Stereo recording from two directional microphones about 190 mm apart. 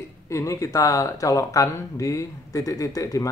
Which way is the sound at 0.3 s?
15° left (ahead or behind).